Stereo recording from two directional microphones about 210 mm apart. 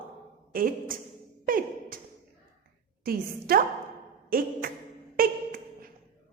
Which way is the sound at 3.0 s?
45° right (ahead or behind).